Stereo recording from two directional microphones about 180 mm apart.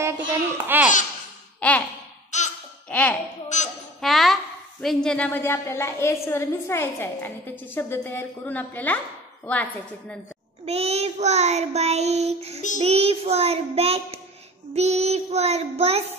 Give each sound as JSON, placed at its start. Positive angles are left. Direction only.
{"t": 0.3, "sound": "a child's voice", "side_deg": -10}
{"t": 1.6, "sound": "sigh", "side_deg": 10}
{"t": 2.3, "sound": "laughter", "side_deg": 40}
{"t": 2.9, "sound": "speech", "side_deg": 5}
{"t": 3.5, "sound": "speech", "side_deg": 40}
{"t": 4.0, "sound": "a woman's voice", "side_deg": 0}
{"t": 10.6, "sound": "child singing", "side_deg": -35}